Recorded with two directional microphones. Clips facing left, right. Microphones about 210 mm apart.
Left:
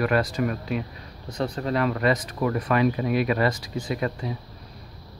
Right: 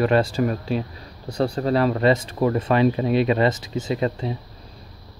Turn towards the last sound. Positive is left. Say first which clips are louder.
# right 4 dB
turn(degrees=-25)  # may be behind; listen again after turning